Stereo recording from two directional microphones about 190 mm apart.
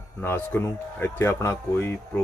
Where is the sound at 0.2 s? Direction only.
10° left (ahead or behind).